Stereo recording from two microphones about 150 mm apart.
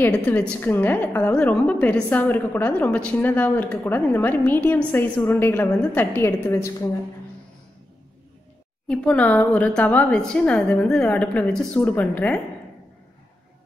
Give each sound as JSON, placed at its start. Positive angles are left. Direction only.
{"t": 0.0, "sound": "a woman's voice", "side_deg": 10}
{"t": 8.8, "sound": "a woman's voice", "side_deg": 5}